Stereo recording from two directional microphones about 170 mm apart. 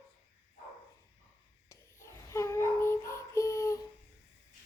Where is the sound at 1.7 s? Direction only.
15° left (ahead or behind).